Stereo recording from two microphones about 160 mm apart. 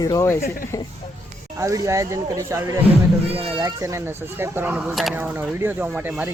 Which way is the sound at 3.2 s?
35° right (ahead or behind).